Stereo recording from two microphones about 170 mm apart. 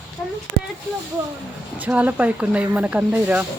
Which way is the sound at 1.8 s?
10° right (ahead or behind).